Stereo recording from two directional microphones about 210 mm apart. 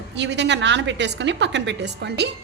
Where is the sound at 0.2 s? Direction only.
55° right (ahead or behind).